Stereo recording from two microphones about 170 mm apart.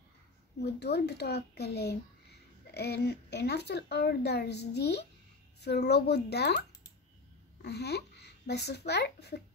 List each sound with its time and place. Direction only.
0.7 s speech: 75° left (ahead or behind)
7.6 s a child's voice: 75° left (ahead or behind)